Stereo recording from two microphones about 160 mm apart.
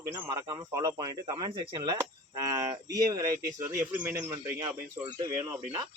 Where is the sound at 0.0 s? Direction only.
20° right (ahead or behind).